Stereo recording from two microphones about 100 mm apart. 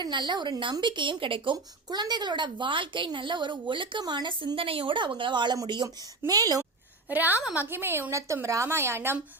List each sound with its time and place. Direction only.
0.0 s a woman's voice: 50° right (ahead or behind)
7.1 s a woman's voice: 20° right (ahead or behind)